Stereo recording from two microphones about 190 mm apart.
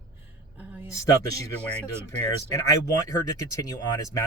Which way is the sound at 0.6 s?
10° right (ahead or behind).